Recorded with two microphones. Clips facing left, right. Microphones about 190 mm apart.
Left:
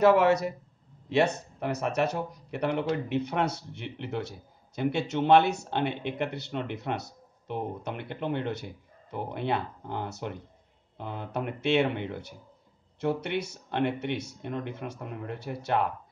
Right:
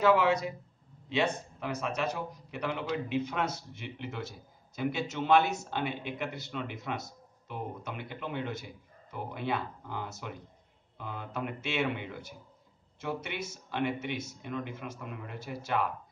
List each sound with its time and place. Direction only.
0.0 s speech: 65° left (ahead or behind)